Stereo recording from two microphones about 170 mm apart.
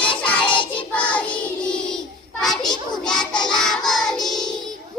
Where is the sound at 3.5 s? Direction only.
5° left (ahead or behind).